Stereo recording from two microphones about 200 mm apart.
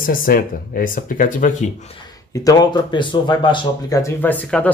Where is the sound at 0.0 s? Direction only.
45° left (ahead or behind).